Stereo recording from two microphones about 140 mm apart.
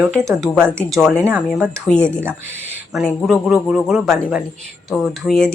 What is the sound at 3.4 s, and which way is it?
Speech, 5° right (ahead or behind).